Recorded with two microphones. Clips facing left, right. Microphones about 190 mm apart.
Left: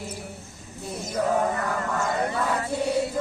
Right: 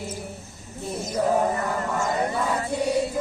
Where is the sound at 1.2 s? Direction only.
25° right (ahead or behind).